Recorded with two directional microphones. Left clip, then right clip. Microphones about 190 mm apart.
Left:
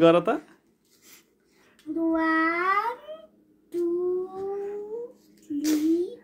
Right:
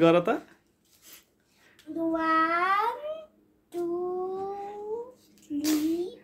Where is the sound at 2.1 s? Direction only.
15° right (ahead or behind).